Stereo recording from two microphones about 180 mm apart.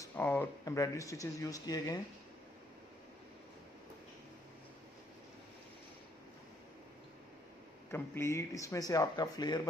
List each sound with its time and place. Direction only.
0.0 s speech: 10° left (ahead or behind)
7.9 s speech: 15° left (ahead or behind)